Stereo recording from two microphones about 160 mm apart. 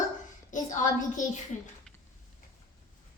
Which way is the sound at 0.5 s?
50° left (ahead or behind).